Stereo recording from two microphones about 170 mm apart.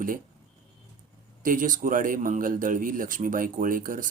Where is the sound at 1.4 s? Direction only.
50° right (ahead or behind).